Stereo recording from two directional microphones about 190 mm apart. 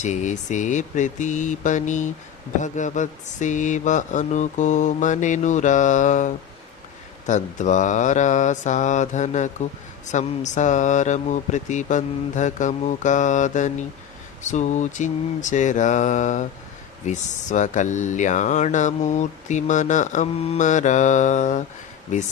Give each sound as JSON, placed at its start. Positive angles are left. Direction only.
{"t": 0.0, "sound": "speech", "side_deg": 40}